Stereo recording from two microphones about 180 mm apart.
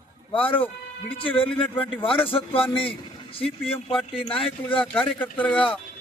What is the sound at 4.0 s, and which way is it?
Speech, 5° left (ahead or behind).